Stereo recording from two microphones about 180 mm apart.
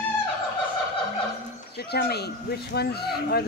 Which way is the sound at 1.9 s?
65° left (ahead or behind).